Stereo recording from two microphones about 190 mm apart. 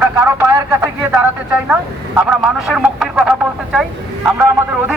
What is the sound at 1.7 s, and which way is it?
Speech, 5° right (ahead or behind).